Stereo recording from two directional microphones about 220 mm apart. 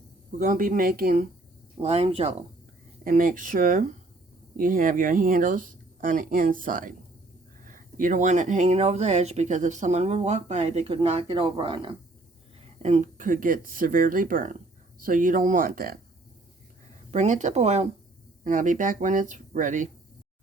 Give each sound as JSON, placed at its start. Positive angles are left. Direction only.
{"t": 0.3, "sound": "speech", "side_deg": -40}
{"t": 1.8, "sound": "speech", "side_deg": -30}
{"t": 3.0, "sound": "speech", "side_deg": -40}
{"t": 12.8, "sound": "speech", "side_deg": -35}
{"t": 17.1, "sound": "speech", "side_deg": -30}